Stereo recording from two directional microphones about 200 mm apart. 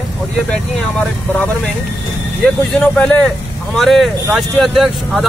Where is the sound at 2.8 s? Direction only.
5° left (ahead or behind).